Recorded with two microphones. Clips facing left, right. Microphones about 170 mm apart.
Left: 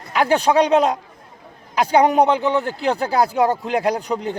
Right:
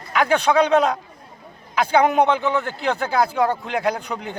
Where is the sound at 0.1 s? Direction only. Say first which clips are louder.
Left 1 dB; 35° left (ahead or behind).